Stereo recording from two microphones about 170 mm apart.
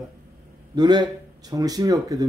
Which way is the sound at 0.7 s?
25° right (ahead or behind).